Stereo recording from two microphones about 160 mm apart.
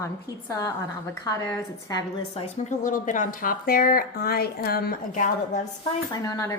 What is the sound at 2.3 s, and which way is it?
Speech, 40° left (ahead or behind).